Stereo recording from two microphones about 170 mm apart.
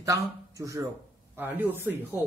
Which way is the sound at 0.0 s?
20° right (ahead or behind).